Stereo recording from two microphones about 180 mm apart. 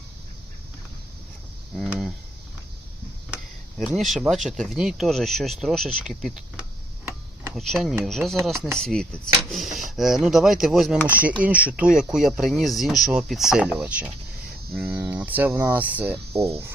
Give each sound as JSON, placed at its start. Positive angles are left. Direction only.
{"t": 1.7, "sound": "speech", "side_deg": 0}
{"t": 3.8, "sound": "speech", "side_deg": 0}